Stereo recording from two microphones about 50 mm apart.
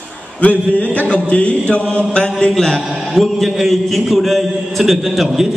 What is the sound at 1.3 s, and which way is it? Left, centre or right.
Chant, left.